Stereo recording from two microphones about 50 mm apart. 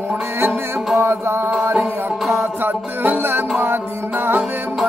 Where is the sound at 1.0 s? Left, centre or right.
Right.